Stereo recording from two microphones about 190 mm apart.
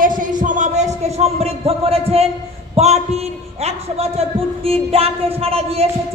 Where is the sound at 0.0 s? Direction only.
45° right (ahead or behind).